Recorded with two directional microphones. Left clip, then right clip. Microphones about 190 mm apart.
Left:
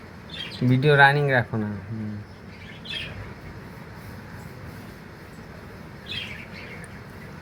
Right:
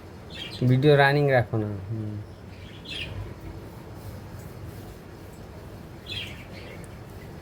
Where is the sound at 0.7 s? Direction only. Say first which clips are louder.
Left 2 dB; 20° right (ahead or behind).